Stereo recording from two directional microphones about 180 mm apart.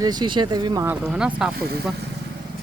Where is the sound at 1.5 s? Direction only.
60° right (ahead or behind).